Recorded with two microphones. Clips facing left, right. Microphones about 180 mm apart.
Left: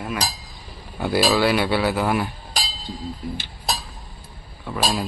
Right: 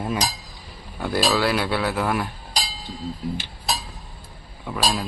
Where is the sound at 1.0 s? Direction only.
Centre (ahead or behind).